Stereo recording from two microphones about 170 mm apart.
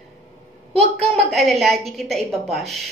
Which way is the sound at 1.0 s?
Centre (ahead or behind).